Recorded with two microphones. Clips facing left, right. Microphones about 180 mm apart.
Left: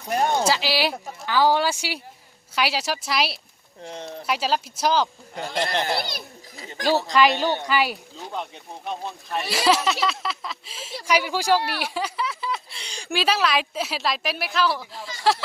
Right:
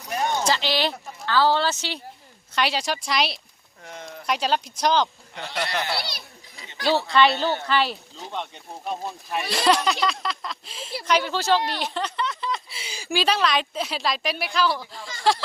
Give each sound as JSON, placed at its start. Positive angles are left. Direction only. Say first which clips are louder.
{"t": 0.4, "sound": "a woman's voice", "louder": "left 1 dB", "side_deg": 5}
{"t": 3.8, "sound": "speech", "louder": "left 4 dB", "side_deg": 30}
{"t": 4.3, "sound": "a woman's voice", "louder": "right 1 dB", "side_deg": 5}
{"t": 5.5, "sound": "speech", "louder": "left 3 dB", "side_deg": 50}
{"t": 5.8, "sound": "a sound", "louder": "left 3 dB", "side_deg": 50}
{"t": 7.2, "sound": "a woman's voice", "louder": "even", "side_deg": 15}
{"t": 11.8, "sound": "a sound", "louder": "even", "side_deg": 10}
{"t": 12.8, "sound": "a woman's voice", "louder": "even", "side_deg": -5}